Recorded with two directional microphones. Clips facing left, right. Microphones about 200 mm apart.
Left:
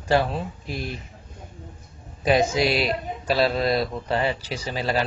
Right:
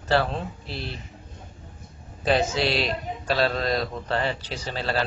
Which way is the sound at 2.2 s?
10° left (ahead or behind).